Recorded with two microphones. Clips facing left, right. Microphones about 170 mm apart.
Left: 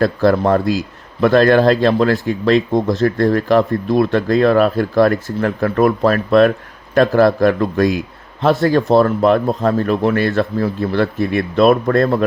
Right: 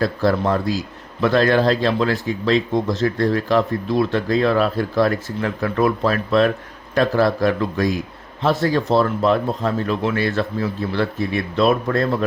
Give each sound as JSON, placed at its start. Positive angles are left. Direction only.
{"t": 0.0, "sound": "speech", "side_deg": 55}